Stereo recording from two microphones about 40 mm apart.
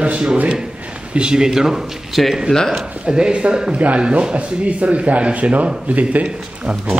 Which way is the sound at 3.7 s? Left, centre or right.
Right.